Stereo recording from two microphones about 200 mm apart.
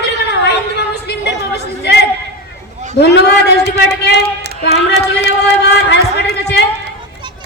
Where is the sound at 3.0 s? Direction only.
55° left (ahead or behind).